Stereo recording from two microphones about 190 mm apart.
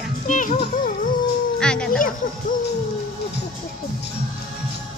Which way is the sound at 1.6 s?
5° left (ahead or behind).